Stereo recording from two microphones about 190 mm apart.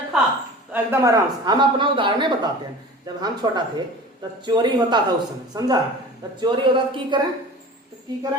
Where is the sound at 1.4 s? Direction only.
25° right (ahead or behind).